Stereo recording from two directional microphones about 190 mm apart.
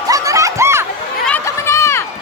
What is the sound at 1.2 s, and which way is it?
Run, 10° left (ahead or behind).